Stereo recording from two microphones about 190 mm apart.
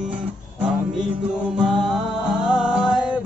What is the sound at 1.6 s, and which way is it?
Music, centre (ahead or behind).